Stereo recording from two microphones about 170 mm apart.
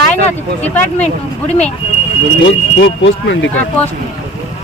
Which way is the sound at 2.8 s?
90° left.